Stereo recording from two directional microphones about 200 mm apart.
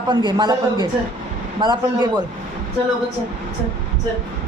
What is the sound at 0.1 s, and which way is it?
A man's voice, 20° right (ahead or behind).